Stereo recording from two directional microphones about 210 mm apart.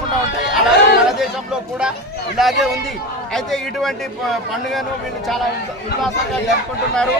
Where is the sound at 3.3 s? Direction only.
Centre (ahead or behind).